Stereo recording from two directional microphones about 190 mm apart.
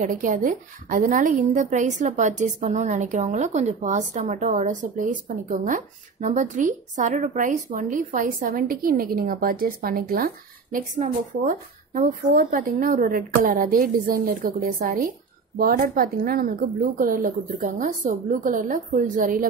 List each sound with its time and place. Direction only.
0.0 s a woman's voice: 45° right (ahead or behind)